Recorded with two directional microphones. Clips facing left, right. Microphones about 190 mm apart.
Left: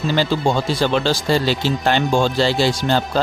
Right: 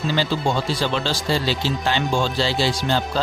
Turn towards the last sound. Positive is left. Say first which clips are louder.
# left 3 dB
turn(degrees=50)  # may be behind; listen again after turning